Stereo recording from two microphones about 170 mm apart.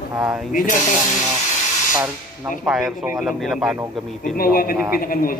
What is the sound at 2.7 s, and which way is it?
Speech, centre (ahead or behind).